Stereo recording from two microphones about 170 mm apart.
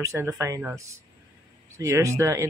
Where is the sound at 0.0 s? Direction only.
20° right (ahead or behind).